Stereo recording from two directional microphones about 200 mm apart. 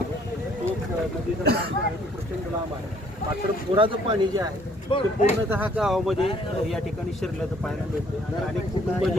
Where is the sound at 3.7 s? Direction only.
25° right (ahead or behind).